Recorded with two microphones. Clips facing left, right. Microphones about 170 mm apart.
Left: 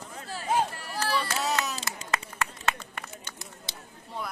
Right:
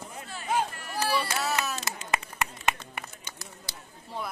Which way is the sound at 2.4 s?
15° right (ahead or behind).